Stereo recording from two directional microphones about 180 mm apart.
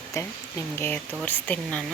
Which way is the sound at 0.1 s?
15° left (ahead or behind).